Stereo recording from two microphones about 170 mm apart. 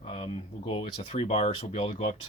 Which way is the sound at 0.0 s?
35° left (ahead or behind).